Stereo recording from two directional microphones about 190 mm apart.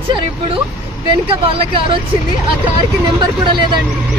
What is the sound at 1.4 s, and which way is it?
Speech, 30° right (ahead or behind).